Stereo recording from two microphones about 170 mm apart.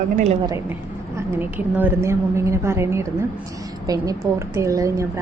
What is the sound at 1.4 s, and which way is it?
A woman's voice, 10° right (ahead or behind).